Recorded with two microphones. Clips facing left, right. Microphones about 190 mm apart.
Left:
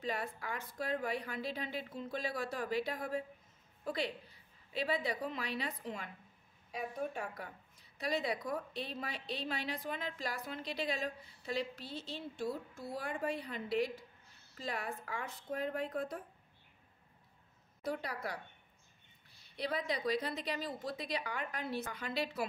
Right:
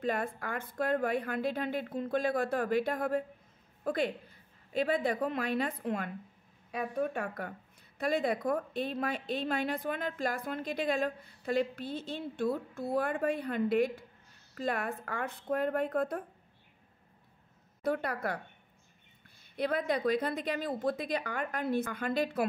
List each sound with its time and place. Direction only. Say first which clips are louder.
0.0 s a woman's voice: right 6 dB; 50° right (ahead or behind)
6.7 s a woman's voice: right 6 dB; 65° right (ahead or behind)
17.8 s speech: right 7 dB; 55° right (ahead or behind)
19.5 s a woman's voice: right 6 dB; 50° right (ahead or behind)